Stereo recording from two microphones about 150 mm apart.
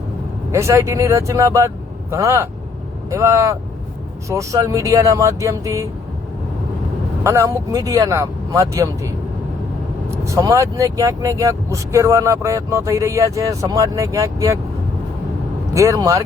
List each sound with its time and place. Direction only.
0.5 s speech: 20° right (ahead or behind)
7.3 s speech: 20° right (ahead or behind)
15.7 s speech: 20° right (ahead or behind)